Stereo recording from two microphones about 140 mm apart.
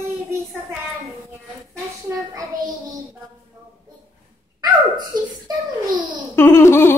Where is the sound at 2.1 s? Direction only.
25° right (ahead or behind).